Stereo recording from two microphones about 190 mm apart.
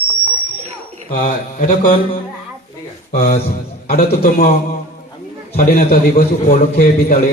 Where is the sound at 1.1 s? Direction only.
45° left (ahead or behind).